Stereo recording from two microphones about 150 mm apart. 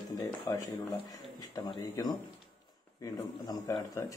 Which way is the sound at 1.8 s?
25° left (ahead or behind).